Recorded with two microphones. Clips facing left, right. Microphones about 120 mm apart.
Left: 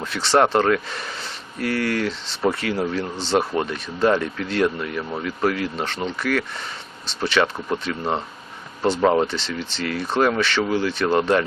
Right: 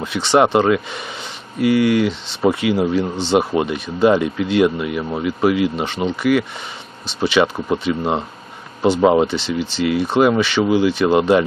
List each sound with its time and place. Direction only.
0.0 s speech: centre (ahead or behind)
3.0 s speech: centre (ahead or behind)